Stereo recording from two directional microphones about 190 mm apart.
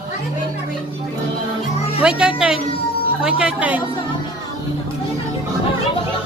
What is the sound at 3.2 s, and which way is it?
Speech, 5° right (ahead or behind).